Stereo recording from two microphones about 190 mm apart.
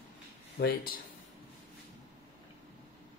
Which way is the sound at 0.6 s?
55° left (ahead or behind).